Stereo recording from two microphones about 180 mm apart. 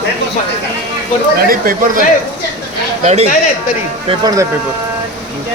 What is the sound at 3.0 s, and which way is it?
Speech, 35° right (ahead or behind).